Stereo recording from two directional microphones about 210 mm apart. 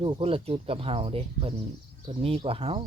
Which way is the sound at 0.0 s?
25° right (ahead or behind).